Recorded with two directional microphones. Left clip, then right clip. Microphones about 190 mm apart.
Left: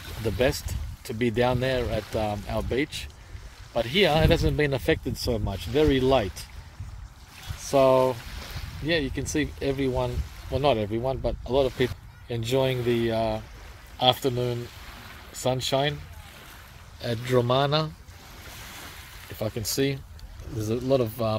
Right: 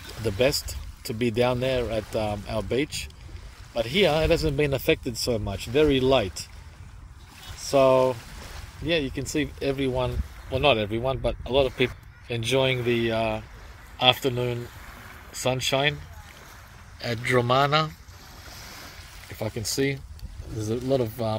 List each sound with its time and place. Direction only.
0.2 s speech: centre (ahead or behind)
7.7 s speech: 5° left (ahead or behind)
17.0 s speech: 20° left (ahead or behind)
19.3 s speech: 15° left (ahead or behind)